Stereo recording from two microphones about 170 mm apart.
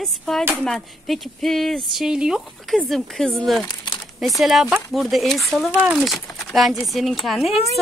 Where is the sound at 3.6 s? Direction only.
25° left (ahead or behind).